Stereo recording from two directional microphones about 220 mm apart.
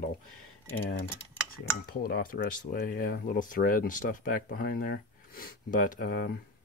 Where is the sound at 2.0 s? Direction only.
40° left (ahead or behind).